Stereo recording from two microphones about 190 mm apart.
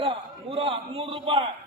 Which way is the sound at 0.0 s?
25° right (ahead or behind).